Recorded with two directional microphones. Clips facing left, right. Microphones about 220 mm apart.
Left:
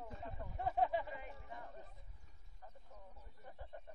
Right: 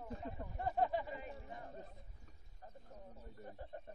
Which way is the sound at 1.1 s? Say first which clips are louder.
Right 2 dB; 30° right (ahead or behind).